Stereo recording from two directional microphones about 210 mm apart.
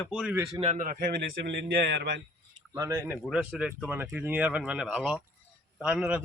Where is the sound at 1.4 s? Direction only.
55° right (ahead or behind).